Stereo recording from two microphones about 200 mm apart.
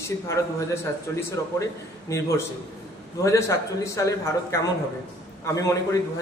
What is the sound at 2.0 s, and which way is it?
A man's voice, 15° left (ahead or behind).